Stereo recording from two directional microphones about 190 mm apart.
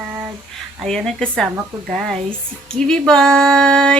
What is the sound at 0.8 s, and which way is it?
Female singing, 5° left (ahead or behind).